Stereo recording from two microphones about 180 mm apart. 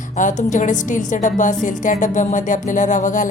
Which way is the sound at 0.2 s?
45° left (ahead or behind).